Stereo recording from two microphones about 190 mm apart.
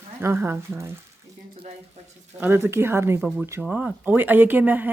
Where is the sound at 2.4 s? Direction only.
10° right (ahead or behind).